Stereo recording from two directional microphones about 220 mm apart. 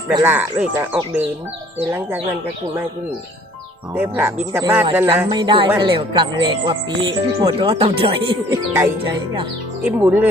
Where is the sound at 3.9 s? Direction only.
10° right (ahead or behind); by 8.3 s 25° right (ahead or behind).